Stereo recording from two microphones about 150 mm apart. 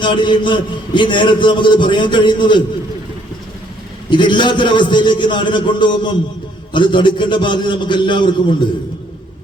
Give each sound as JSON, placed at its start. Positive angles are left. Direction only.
{"t": 0.0, "sound": "a man's voice", "side_deg": 30}
{"t": 4.1, "sound": "a man's voice", "side_deg": 30}